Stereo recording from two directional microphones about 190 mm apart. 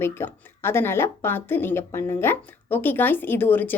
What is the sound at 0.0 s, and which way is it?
A woman's voice, 10° left (ahead or behind).